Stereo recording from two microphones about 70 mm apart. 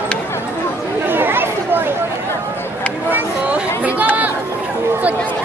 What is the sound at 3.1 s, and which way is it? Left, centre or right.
Chatter, right.